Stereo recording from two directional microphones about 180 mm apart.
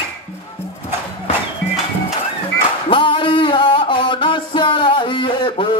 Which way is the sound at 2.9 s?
25° left (ahead or behind).